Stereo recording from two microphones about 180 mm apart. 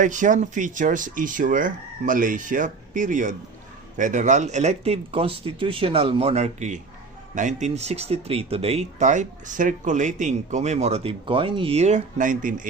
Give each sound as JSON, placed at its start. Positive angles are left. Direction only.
{"t": 0.0, "sound": "speech", "side_deg": -45}